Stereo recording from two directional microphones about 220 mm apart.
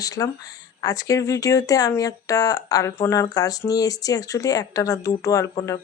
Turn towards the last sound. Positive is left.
turn(degrees=15)  # may be behind; listen again after turning